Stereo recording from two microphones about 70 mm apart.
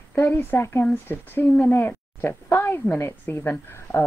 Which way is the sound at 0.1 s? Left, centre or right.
Left.